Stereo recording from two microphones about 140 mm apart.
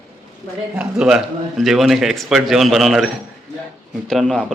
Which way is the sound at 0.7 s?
5° right (ahead or behind).